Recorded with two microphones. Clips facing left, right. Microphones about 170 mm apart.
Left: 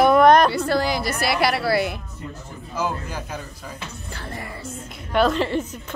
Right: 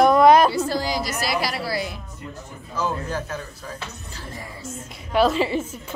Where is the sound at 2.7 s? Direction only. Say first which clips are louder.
Right 1 dB; 10° left (ahead or behind).